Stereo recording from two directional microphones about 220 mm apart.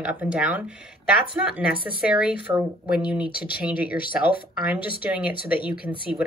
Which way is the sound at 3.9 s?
40° left (ahead or behind).